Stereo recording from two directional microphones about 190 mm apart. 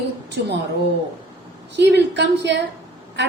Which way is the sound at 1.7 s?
65° right (ahead or behind).